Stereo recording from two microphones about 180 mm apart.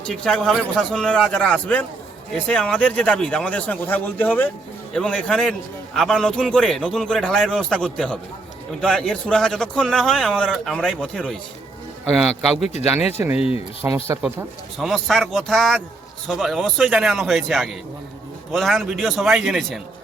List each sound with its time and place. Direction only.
0.0 s a man's voice: 5° left (ahead or behind)
13.3 s speech: 35° left (ahead or behind)
13.8 s speech: 15° right (ahead or behind)
14.8 s a man's voice: centre (ahead or behind)